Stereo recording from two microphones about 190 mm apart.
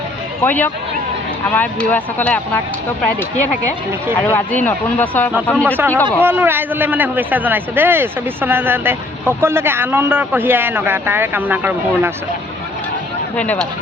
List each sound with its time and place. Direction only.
0.4 s speech: 10° left (ahead or behind)
4.2 s speech: 10° left (ahead or behind)
6.1 s a man's voice: 10° right (ahead or behind)
13.3 s speech: 5° left (ahead or behind)